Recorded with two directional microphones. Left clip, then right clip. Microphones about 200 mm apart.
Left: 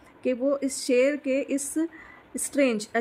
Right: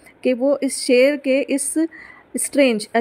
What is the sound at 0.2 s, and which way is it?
A woman's voice, 25° right (ahead or behind).